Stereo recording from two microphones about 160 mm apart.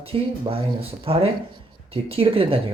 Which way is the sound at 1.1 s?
35° right (ahead or behind).